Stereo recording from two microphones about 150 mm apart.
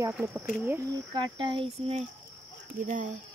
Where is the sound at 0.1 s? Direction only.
10° right (ahead or behind).